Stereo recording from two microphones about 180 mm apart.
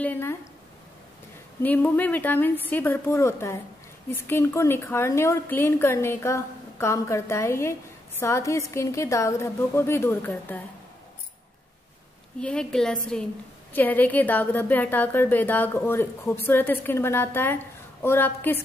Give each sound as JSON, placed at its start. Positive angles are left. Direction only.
{"t": 0.0, "sound": "a woman's voice", "side_deg": 10}
{"t": 1.6, "sound": "a woman's voice", "side_deg": 10}
{"t": 12.4, "sound": "a woman's voice", "side_deg": 5}